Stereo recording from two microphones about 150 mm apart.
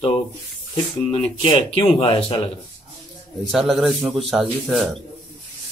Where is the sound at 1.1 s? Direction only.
35° left (ahead or behind).